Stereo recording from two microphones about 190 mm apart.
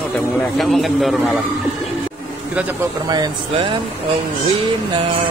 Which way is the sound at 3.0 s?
20° right (ahead or behind).